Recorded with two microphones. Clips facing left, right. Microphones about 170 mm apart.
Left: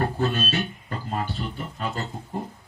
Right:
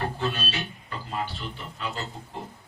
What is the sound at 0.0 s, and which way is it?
Speech, 50° left (ahead or behind).